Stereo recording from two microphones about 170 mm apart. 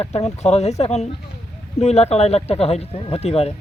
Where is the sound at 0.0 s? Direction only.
40° left (ahead or behind).